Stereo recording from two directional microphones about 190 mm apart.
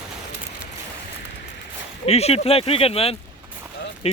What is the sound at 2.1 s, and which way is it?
Speech, 35° left (ahead or behind).